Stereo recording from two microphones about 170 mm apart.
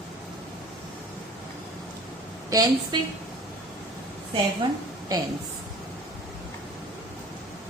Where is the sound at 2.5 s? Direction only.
20° right (ahead or behind).